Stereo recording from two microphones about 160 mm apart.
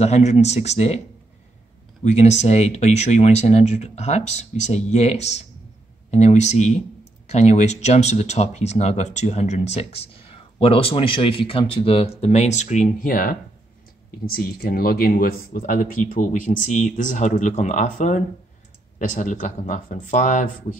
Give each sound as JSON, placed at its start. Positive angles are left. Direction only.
{"t": 0.0, "sound": "speech", "side_deg": 45}
{"t": 2.0, "sound": "speech", "side_deg": 45}
{"t": 14.2, "sound": "speech", "side_deg": 70}